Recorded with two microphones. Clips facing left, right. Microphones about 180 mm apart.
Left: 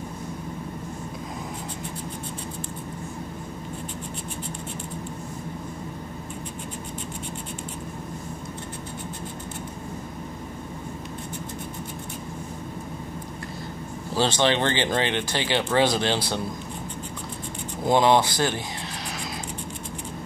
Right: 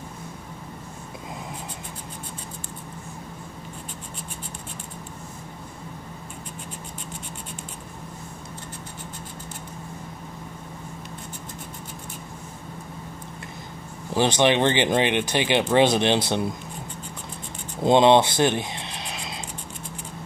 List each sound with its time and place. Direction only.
14.1 s speech: 15° right (ahead or behind)
17.8 s speech: 25° right (ahead or behind)
19.0 s music: 20° right (ahead or behind)